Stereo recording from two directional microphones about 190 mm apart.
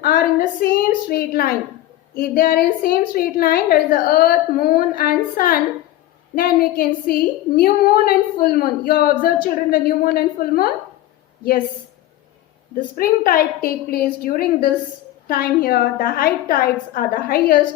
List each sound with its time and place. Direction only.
0.0 s a woman's voice: 50° left (ahead or behind)
12.7 s a woman's voice: 50° left (ahead or behind)